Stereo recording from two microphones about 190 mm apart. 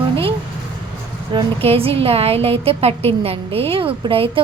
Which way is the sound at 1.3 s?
25° right (ahead or behind).